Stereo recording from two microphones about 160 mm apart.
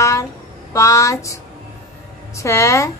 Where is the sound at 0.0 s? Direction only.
20° left (ahead or behind).